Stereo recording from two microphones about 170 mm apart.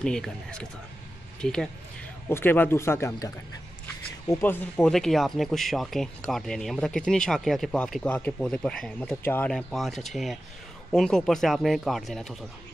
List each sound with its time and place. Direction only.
0.0 s speech: 5° left (ahead or behind)
4.3 s speech: 10° left (ahead or behind)